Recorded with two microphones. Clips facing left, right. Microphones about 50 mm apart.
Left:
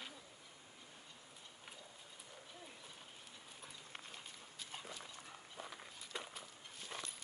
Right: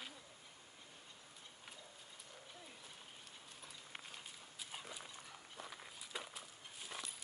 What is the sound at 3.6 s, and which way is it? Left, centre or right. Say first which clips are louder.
Dog: even; centre.